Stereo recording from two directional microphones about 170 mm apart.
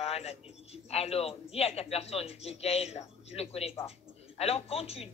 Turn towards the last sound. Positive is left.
turn(degrees=35)  # may be behind; listen again after turning